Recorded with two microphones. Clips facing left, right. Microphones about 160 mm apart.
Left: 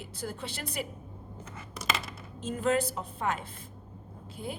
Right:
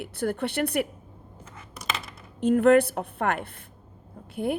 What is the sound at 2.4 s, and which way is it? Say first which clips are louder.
A woman's voice: right 10 dB; 60° right (ahead or behind).